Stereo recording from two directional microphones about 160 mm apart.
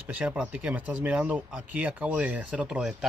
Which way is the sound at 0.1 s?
5° right (ahead or behind).